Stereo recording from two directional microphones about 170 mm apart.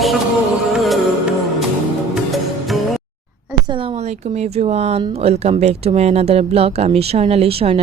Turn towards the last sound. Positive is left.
turn(degrees=-35)  # may be behind; listen again after turning